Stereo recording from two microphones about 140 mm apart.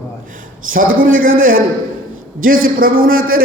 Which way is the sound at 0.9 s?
80° right.